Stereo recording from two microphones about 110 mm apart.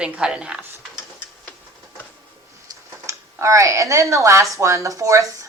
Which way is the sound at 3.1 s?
30° right (ahead or behind).